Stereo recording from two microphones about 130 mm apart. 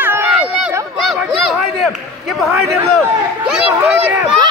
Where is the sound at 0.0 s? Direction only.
15° right (ahead or behind).